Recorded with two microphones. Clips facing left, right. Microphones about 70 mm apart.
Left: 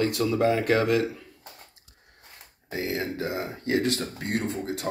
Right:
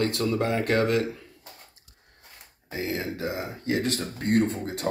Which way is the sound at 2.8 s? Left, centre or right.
Right.